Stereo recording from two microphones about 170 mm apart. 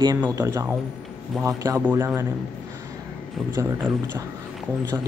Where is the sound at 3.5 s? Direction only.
15° right (ahead or behind).